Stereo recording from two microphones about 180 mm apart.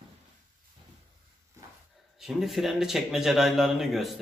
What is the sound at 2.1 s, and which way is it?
A man's voice, centre (ahead or behind).